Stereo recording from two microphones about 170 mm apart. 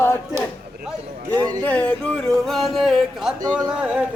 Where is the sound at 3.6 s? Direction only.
5° right (ahead or behind).